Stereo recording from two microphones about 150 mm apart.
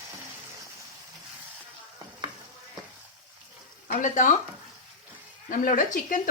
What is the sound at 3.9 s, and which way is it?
Speech, 60° left (ahead or behind).